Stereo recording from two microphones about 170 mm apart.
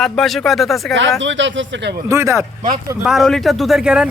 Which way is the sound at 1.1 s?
90° right.